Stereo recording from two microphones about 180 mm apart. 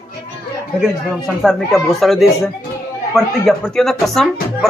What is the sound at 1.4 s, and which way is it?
Speech, centre (ahead or behind).